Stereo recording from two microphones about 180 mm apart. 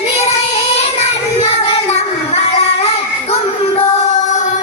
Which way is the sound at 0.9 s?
35° left (ahead or behind).